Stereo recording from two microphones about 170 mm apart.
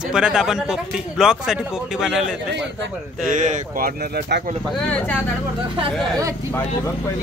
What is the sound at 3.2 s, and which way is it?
Speech, 50° right (ahead or behind).